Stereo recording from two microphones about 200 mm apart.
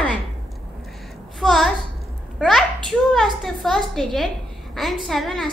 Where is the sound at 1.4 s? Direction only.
Centre (ahead or behind).